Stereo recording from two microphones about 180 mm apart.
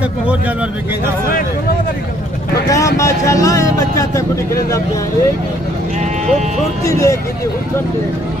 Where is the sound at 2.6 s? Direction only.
15° left (ahead or behind).